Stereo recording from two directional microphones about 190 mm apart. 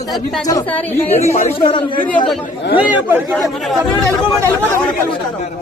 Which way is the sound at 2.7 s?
10° right (ahead or behind).